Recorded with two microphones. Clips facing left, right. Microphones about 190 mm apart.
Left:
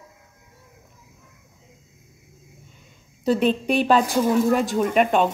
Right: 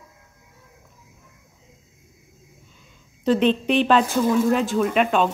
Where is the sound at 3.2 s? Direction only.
10° left (ahead or behind).